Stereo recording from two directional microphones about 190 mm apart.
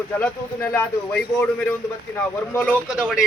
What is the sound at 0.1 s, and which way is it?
Speech, 10° left (ahead or behind).